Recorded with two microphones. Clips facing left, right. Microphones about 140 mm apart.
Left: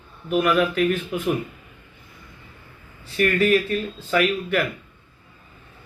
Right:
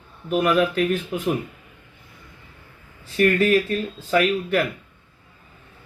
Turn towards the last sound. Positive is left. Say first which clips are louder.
# right 1 dB
turn(degrees=-35)  # may be behind; listen again after turning